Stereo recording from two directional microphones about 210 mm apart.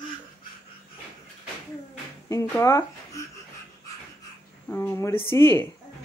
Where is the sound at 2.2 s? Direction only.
15° left (ahead or behind).